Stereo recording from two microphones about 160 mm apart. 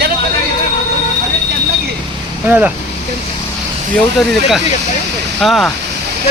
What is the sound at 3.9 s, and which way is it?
Speech, centre (ahead or behind).